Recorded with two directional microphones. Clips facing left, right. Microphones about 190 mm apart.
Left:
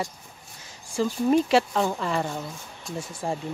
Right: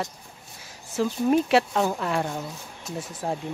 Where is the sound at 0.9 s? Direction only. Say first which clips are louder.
Even; centre (ahead or behind).